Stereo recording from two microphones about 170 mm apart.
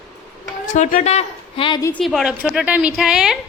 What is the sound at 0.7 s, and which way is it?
A woman's voice, 45° left (ahead or behind).